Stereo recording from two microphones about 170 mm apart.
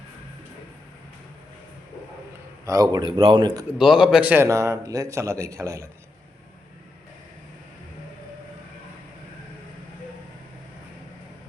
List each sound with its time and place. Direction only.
2.6 s speech: 20° right (ahead or behind)
3.8 s a man's voice: 5° right (ahead or behind)